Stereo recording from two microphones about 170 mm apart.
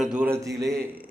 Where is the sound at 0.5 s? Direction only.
20° right (ahead or behind).